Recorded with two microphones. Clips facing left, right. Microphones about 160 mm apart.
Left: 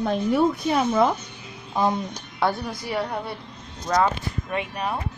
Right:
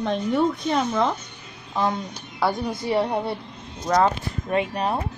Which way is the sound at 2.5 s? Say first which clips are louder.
Right 3 dB; 20° right (ahead or behind).